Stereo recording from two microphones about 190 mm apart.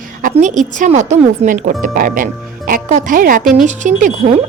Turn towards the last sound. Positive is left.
turn(degrees=-40)  # may be behind; listen again after turning